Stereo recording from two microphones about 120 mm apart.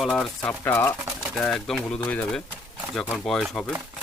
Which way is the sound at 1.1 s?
Centre (ahead or behind).